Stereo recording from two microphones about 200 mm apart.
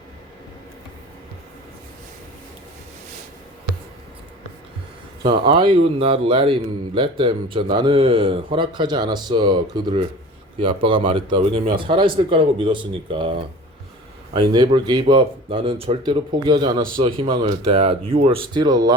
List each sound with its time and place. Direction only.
5.2 s a man's voice: 25° right (ahead or behind)